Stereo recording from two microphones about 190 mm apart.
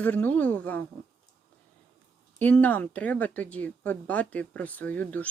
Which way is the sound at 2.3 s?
10° left (ahead or behind).